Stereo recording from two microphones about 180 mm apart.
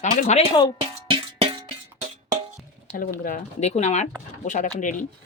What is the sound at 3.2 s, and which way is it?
Speech, 45° left (ahead or behind).